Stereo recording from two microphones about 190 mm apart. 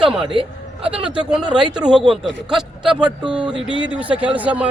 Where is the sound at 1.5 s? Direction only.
5° right (ahead or behind).